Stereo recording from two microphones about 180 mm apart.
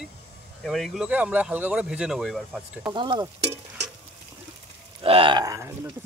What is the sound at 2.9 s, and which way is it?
Speech, 25° right (ahead or behind).